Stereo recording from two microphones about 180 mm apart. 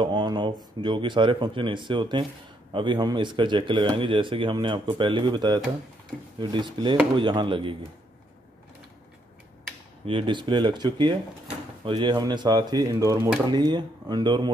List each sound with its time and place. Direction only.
0.0 s speech: 25° right (ahead or behind)
10.0 s speech: 30° right (ahead or behind)